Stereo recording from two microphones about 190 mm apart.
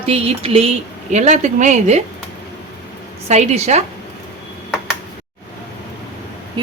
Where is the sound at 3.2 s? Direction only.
35° right (ahead or behind).